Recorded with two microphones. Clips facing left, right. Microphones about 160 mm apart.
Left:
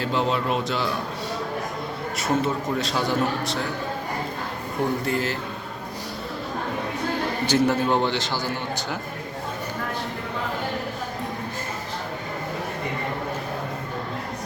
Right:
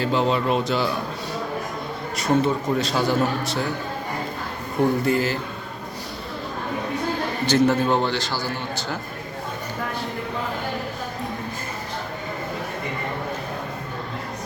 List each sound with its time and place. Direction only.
0.0 s a man's voice: centre (ahead or behind)
2.1 s a man's voice: centre (ahead or behind)
5.0 s a man's voice: centre (ahead or behind)
7.4 s a man's voice: 10° left (ahead or behind)